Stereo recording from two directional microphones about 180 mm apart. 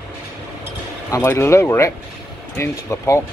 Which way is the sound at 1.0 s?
15° left (ahead or behind).